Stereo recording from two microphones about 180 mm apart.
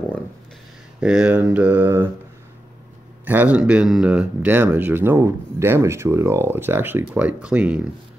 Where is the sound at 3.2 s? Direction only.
10° right (ahead or behind).